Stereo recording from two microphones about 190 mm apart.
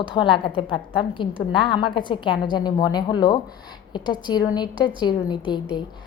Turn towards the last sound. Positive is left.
turn(degrees=25)  # may be behind; listen again after turning